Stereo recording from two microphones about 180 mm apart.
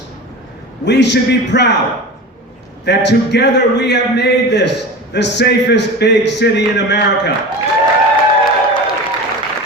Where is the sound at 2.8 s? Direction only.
70° left (ahead or behind).